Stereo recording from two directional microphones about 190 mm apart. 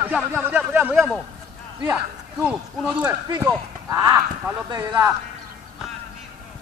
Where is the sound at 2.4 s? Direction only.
5° right (ahead or behind).